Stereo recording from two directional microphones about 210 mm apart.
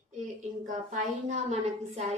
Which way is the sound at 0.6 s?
35° right (ahead or behind).